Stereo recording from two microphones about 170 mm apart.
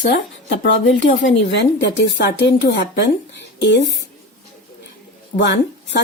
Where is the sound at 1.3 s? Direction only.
90° left.